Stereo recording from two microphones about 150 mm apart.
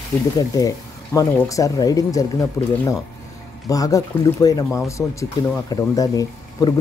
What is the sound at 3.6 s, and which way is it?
Speech, 25° left (ahead or behind).